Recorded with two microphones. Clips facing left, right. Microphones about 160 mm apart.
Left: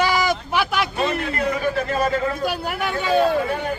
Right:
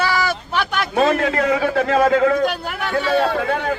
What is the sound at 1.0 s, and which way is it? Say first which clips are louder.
A man's voice: right 5 dB; 90° right.